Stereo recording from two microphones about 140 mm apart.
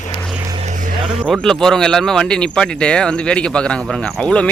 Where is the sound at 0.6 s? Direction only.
65° right (ahead or behind).